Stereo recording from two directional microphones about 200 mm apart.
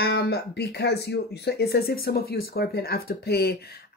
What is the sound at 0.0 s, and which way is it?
Speech, 55° left (ahead or behind).